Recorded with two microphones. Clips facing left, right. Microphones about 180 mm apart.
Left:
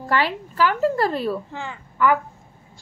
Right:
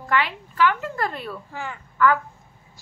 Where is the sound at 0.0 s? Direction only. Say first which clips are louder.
Left 2 dB; 35° left (ahead or behind).